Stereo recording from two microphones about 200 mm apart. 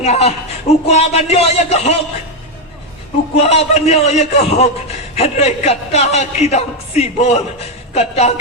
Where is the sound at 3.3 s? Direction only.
30° left (ahead or behind).